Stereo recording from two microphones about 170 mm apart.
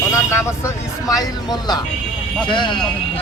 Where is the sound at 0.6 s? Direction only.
20° left (ahead or behind).